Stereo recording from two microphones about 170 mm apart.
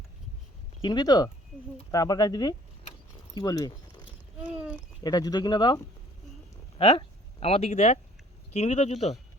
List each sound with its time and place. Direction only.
0.8 s speech: 25° left (ahead or behind)
4.4 s a sound: 5° right (ahead or behind)
5.0 s speech: 25° left (ahead or behind); by 9.1 s 40° left (ahead or behind)